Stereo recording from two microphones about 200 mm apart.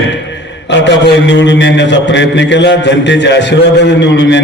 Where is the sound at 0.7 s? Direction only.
60° left (ahead or behind).